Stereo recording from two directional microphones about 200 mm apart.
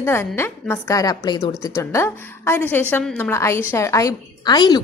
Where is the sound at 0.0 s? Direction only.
10° left (ahead or behind).